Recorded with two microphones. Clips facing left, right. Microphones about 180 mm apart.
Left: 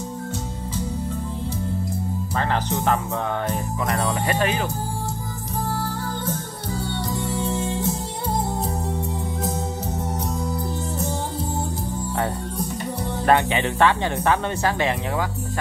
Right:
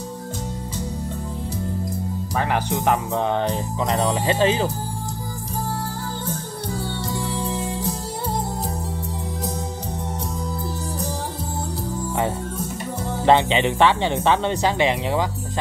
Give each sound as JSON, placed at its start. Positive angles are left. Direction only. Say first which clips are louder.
{"t": 2.3, "sound": "speech", "louder": "right 1 dB", "side_deg": -15}
{"t": 7.5, "sound": "music", "louder": "left 2 dB", "side_deg": 20}
{"t": 13.2, "sound": "speech", "louder": "right 3 dB", "side_deg": -20}